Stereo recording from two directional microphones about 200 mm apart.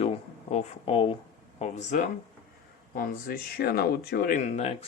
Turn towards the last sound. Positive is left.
turn(degrees=30)  # may be behind; listen again after turning